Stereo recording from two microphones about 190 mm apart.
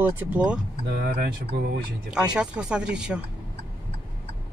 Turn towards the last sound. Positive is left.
turn(degrees=-5)  # may be behind; listen again after turning